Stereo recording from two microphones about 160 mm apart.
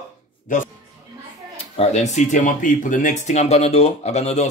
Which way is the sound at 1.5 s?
40° left (ahead or behind).